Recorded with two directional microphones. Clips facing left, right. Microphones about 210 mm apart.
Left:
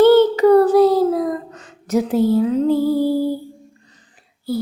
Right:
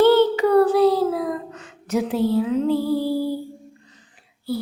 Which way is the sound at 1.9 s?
40° left (ahead or behind).